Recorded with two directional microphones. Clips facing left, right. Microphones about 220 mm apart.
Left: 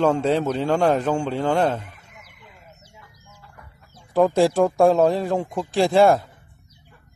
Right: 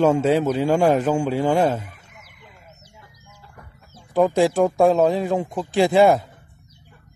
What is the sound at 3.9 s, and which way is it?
Speech, centre (ahead or behind).